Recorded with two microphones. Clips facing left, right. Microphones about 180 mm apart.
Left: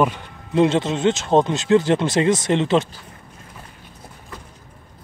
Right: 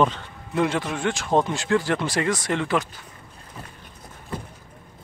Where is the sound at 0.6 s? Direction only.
25° left (ahead or behind).